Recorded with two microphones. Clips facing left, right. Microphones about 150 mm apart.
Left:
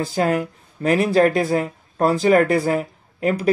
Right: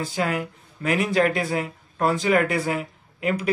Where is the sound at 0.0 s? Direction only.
40° left (ahead or behind).